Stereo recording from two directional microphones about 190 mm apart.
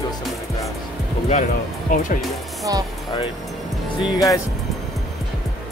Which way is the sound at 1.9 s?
45° left (ahead or behind).